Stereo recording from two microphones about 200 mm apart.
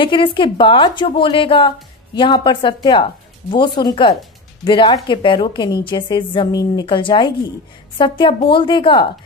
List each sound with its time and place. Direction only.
0.0 s a woman's voice: 25° left (ahead or behind)